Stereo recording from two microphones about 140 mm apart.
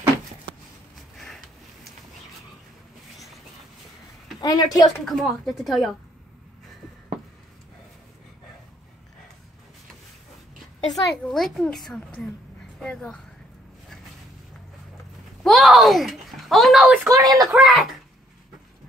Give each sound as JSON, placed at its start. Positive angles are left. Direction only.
{"t": 1.1, "sound": "a sound", "side_deg": 5}
{"t": 4.4, "sound": "speech", "side_deg": 25}
{"t": 5.0, "sound": "a woman's voice", "side_deg": 0}
{"t": 10.9, "sound": "a woman's voice", "side_deg": 0}
{"t": 15.4, "sound": "speech", "side_deg": 0}
{"t": 17.1, "sound": "speech", "side_deg": -25}
{"t": 17.5, "sound": "a woman's voice", "side_deg": 0}